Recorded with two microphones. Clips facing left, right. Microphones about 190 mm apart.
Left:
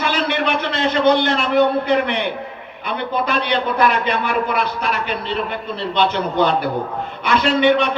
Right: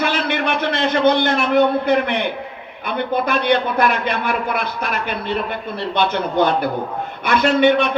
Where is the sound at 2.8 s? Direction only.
50° right (ahead or behind).